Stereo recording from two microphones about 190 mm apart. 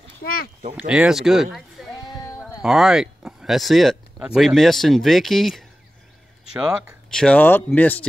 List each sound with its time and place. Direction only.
0.7 s speech: 5° right (ahead or behind)
2.0 s child singing: 20° left (ahead or behind)
2.6 s speech: centre (ahead or behind)